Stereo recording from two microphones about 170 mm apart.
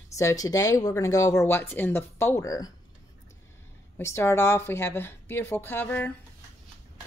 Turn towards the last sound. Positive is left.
turn(degrees=10)  # may be behind; listen again after turning